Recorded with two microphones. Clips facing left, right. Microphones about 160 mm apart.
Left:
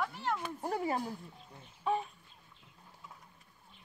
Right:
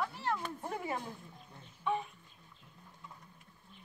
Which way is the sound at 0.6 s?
35° left (ahead or behind).